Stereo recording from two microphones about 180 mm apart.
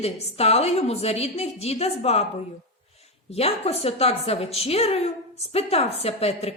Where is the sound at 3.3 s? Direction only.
35° left (ahead or behind).